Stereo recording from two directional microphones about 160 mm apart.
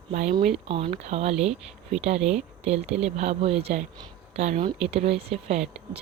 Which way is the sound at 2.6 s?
40° right (ahead or behind).